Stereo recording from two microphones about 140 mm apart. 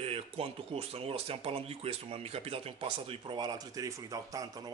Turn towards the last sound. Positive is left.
turn(degrees=-25)  # may be behind; listen again after turning